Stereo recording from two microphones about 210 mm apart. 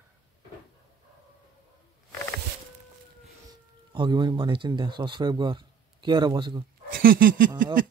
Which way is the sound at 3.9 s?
20° right (ahead or behind).